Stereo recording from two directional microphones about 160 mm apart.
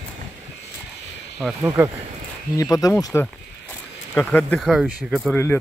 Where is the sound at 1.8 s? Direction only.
15° right (ahead or behind).